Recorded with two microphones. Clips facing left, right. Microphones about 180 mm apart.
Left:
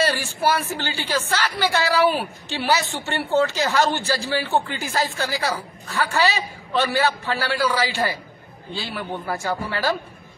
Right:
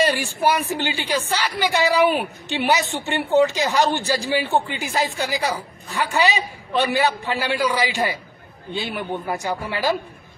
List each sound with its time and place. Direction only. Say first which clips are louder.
0.0 s a man's voice: right 2 dB; 15° right (ahead or behind)